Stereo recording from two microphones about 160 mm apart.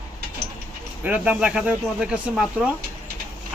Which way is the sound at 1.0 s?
10° right (ahead or behind).